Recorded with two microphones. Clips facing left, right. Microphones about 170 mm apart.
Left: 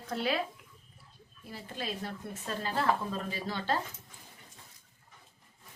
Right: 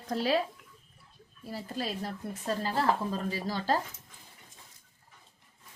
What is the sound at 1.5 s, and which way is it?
A woman's voice, 40° right (ahead or behind).